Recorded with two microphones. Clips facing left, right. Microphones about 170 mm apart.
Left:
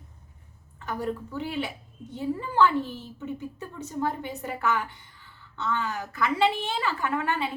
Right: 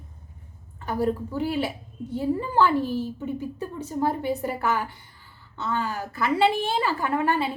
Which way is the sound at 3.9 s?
35° right (ahead or behind).